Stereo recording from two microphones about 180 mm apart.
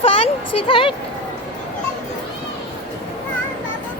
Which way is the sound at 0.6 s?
25° left (ahead or behind).